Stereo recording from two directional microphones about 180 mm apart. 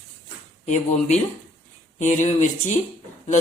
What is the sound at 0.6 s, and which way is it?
A woman's voice, 40° left (ahead or behind).